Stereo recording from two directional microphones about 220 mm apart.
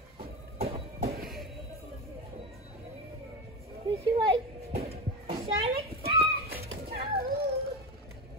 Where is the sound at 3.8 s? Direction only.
25° right (ahead or behind).